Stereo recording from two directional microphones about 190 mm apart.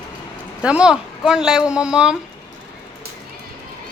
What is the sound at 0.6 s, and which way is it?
Speech, 5° right (ahead or behind).